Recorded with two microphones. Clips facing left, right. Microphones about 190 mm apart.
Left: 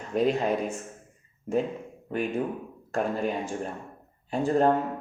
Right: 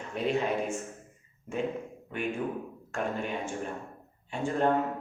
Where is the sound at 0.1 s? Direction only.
40° left (ahead or behind).